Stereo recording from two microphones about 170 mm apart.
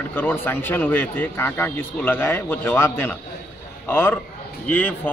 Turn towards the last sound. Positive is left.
turn(degrees=10)  # may be behind; listen again after turning